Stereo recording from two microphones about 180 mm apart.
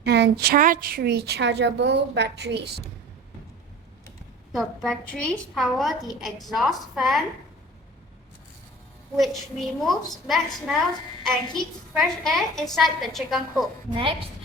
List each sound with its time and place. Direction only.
0.0 s a woman's voice: 65° right (ahead or behind)
4.5 s a woman's voice: centre (ahead or behind)
9.1 s a woman's voice: centre (ahead or behind)